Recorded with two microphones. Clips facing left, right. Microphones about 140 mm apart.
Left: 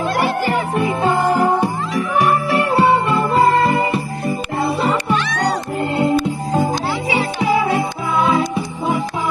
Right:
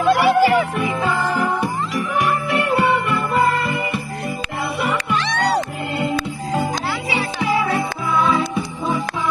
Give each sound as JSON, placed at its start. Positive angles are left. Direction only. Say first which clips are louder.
{"t": 0.1, "sound": "music", "louder": "right 8 dB", "side_deg": 45}
{"t": 0.7, "sound": "music", "louder": "left 4 dB", "side_deg": 30}
{"t": 7.1, "sound": "music", "louder": "left 4 dB", "side_deg": 25}